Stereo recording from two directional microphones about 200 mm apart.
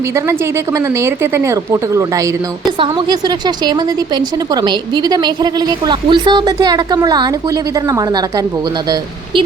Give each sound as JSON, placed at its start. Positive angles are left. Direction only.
{"t": 0.3, "sound": "a woman's voice", "side_deg": -15}